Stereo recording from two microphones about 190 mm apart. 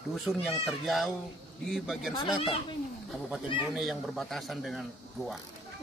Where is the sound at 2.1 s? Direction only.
20° left (ahead or behind).